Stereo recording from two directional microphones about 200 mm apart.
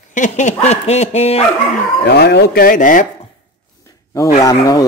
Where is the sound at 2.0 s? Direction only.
55° left (ahead or behind).